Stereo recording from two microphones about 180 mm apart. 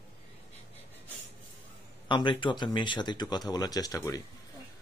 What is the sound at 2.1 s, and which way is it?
A woman's voice, 25° left (ahead or behind).